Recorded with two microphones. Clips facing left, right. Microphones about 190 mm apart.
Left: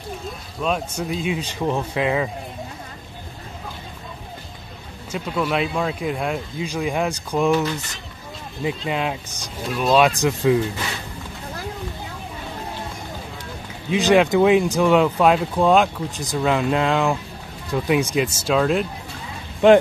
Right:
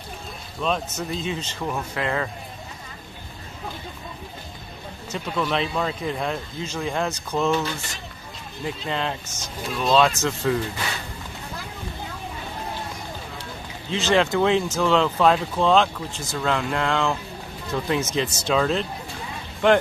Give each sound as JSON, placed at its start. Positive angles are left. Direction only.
{"t": 0.6, "sound": "speech", "side_deg": 10}
{"t": 5.1, "sound": "speech", "side_deg": 5}
{"t": 13.8, "sound": "speech", "side_deg": 15}
{"t": 19.6, "sound": "speech", "side_deg": 20}